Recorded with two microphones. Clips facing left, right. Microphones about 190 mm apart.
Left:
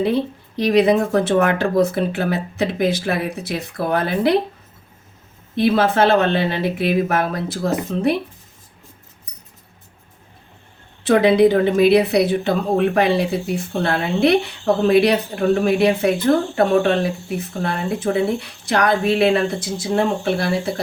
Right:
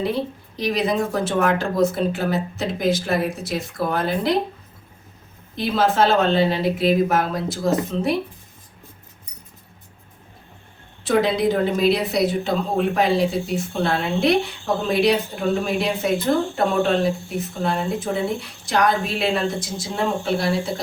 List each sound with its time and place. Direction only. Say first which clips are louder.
0.0 s speech: left 4 dB; 60° left (ahead or behind)
5.5 s speech: left 3 dB; 60° left (ahead or behind)
11.0 s speech: left 6 dB; 65° left (ahead or behind)